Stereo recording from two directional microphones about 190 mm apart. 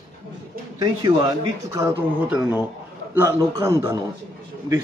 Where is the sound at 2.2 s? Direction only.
5° right (ahead or behind).